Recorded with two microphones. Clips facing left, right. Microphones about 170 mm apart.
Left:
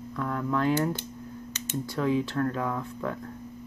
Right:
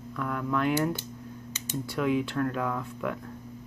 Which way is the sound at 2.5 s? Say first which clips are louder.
Even; 20° left (ahead or behind).